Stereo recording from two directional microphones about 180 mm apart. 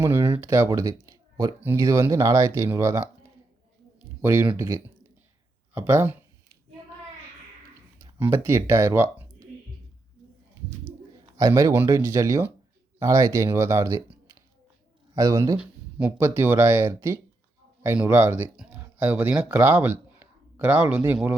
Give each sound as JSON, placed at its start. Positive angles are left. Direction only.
{"t": 0.0, "sound": "speech", "side_deg": -15}
{"t": 4.2, "sound": "speech", "side_deg": -10}
{"t": 8.2, "sound": "speech", "side_deg": -15}
{"t": 11.3, "sound": "speech", "side_deg": -20}
{"t": 15.5, "sound": "speech", "side_deg": -10}